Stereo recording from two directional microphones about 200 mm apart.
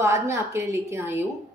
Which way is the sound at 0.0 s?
15° right (ahead or behind).